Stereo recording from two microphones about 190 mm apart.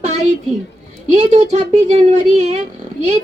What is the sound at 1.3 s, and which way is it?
Speech, 35° right (ahead or behind).